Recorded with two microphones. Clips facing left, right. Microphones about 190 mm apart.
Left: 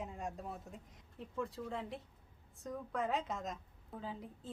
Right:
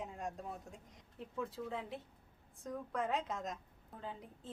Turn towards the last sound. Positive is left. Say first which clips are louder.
# left 2 dB
turn(degrees=0)  # may be behind; listen again after turning